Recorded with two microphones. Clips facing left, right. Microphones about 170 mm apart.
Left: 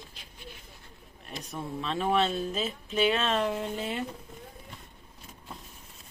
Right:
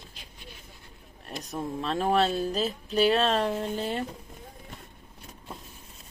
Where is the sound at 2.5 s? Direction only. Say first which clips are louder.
Right 4 dB; centre (ahead or behind).